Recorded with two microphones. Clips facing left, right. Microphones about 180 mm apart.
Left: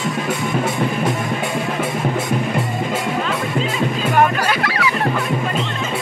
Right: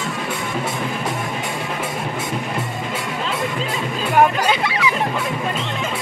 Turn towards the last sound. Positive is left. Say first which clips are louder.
# even
turn(degrees=-20)  # may be behind; listen again after turning